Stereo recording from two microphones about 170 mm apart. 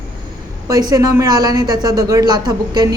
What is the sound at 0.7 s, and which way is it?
A woman's voice, 20° right (ahead or behind).